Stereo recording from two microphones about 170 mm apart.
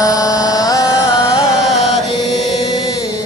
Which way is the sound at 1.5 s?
Centre (ahead or behind).